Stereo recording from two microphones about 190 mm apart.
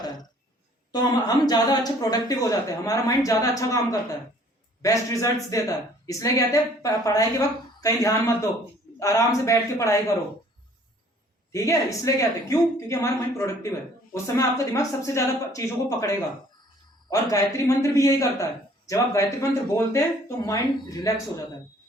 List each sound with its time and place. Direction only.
0.9 s a woman's voice: 20° left (ahead or behind)
11.5 s a woman's voice: 15° left (ahead or behind)